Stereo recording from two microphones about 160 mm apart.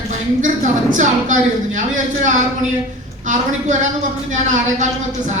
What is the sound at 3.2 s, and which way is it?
Speech, 50° right (ahead or behind).